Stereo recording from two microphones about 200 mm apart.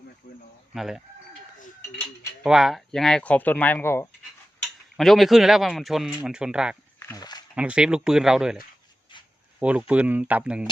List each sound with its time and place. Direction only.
0.2 s speech: 45° left (ahead or behind)
0.7 s speech: centre (ahead or behind)
2.4 s speech: centre (ahead or behind)
4.6 s speech: centre (ahead or behind)
7.0 s speech: 15° left (ahead or behind)
7.5 s speech: 5° right (ahead or behind)
9.6 s speech: 5° right (ahead or behind)